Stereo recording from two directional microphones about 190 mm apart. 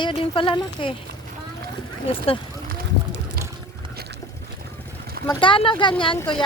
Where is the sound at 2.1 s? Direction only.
30° left (ahead or behind).